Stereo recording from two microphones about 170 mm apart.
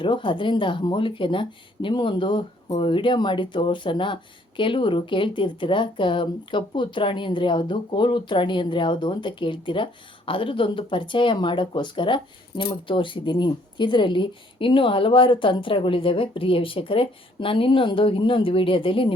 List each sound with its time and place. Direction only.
0.0 s speech: 30° left (ahead or behind)